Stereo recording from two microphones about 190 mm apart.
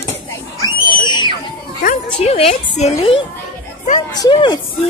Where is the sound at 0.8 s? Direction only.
25° left (ahead or behind).